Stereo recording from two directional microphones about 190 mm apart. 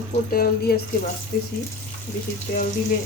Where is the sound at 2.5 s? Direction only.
45° left (ahead or behind).